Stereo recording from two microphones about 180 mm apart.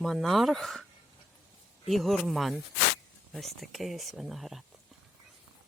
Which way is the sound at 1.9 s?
Centre (ahead or behind).